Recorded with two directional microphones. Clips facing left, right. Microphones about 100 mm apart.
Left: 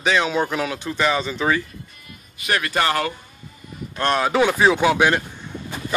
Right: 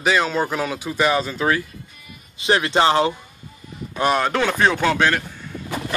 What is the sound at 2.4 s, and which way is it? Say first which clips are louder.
Speech: right 4 dB; 25° right (ahead or behind).